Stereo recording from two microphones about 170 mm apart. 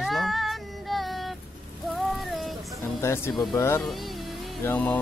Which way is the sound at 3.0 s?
15° left (ahead or behind).